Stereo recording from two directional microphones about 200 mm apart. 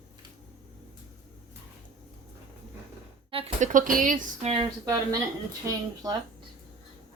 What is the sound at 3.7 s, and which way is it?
Speech, 40° right (ahead or behind).